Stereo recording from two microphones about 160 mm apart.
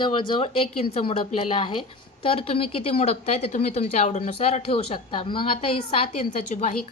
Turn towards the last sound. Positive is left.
turn(degrees=50)  # may be behind; listen again after turning